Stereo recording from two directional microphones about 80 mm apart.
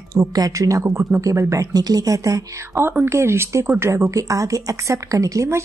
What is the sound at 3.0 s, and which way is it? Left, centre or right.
A woman's voice, right.